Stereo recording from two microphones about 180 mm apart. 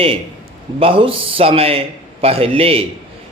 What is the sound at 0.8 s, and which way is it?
Speech, 30° right (ahead or behind).